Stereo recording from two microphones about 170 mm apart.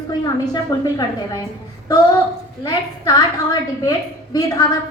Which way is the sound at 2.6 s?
20° left (ahead or behind).